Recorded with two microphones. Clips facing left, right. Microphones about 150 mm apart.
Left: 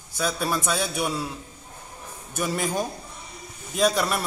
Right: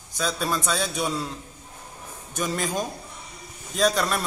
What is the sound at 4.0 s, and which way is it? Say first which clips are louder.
Speech: even; 10° left (ahead or behind).